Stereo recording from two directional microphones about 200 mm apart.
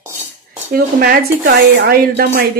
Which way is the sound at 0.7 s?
45° right (ahead or behind).